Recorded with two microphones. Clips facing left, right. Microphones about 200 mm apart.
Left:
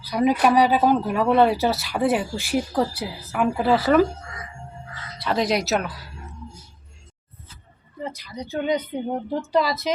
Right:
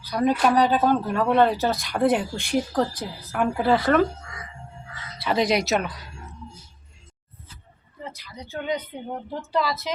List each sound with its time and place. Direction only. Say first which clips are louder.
0.0 s speech: left 2 dB; 10° left (ahead or behind)
5.2 s speech: even; centre (ahead or behind)
8.2 s speech: left 6 dB; 15° left (ahead or behind)